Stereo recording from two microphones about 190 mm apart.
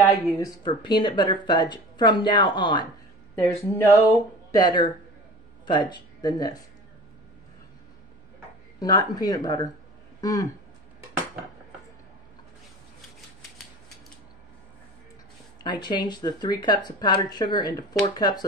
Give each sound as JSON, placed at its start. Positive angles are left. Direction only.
{"t": 0.0, "sound": "speech", "side_deg": 20}
{"t": 3.3, "sound": "speech", "side_deg": 15}
{"t": 8.7, "sound": "speech", "side_deg": 20}
{"t": 15.6, "sound": "speech", "side_deg": 25}